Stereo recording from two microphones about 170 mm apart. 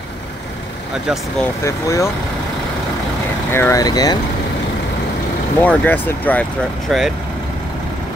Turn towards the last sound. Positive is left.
turn(degrees=0)  # may be behind; listen again after turning